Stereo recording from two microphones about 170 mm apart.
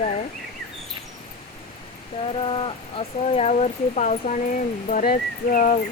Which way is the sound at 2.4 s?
30° left (ahead or behind).